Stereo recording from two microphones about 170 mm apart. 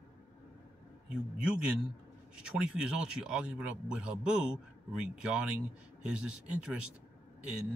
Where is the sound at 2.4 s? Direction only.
5° right (ahead or behind).